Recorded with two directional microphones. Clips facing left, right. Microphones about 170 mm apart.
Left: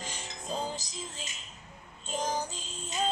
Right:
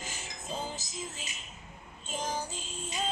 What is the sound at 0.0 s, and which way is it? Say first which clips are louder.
Music: left 2 dB; 5° right (ahead or behind).